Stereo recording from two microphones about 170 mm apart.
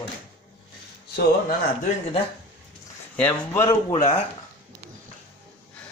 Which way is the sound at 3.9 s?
45° left (ahead or behind).